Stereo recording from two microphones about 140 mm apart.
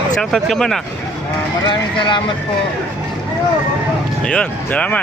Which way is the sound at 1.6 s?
35° left (ahead or behind).